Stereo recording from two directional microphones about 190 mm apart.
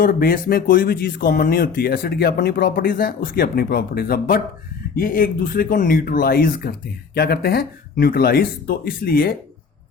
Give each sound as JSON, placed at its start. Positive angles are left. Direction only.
{"t": 0.0, "sound": "speech", "side_deg": 50}